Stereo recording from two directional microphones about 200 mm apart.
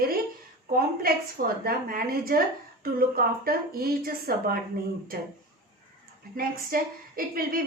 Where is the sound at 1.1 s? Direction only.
45° right (ahead or behind).